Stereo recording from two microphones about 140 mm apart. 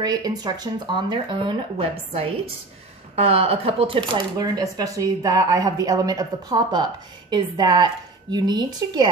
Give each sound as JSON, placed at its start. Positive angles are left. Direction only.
{"t": 0.0, "sound": "speech", "side_deg": -25}